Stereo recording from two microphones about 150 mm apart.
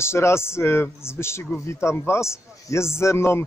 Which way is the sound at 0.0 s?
15° left (ahead or behind).